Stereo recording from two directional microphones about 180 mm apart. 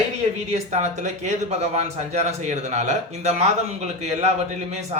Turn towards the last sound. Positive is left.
turn(degrees=-40)  # may be behind; listen again after turning